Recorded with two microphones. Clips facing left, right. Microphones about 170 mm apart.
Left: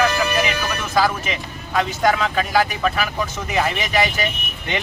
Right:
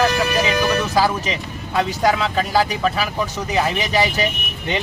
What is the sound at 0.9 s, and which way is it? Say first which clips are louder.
Speech: right 1 dB; 35° right (ahead or behind).